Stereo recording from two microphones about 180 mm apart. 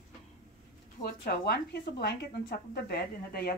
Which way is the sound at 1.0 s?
60° left (ahead or behind).